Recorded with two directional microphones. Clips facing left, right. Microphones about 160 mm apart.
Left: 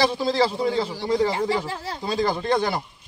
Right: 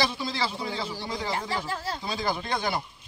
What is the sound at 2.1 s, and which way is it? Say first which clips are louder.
Speech: left 8 dB; 45° left (ahead or behind).